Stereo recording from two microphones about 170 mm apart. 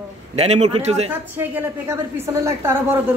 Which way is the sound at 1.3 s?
10° right (ahead or behind).